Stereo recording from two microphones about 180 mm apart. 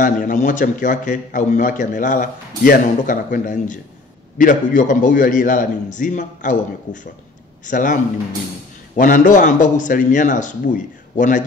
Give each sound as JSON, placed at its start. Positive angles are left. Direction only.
{"t": 0.0, "sound": "a man's voice", "side_deg": 45}